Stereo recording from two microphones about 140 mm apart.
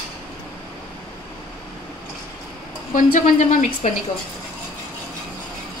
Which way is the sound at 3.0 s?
65° left (ahead or behind).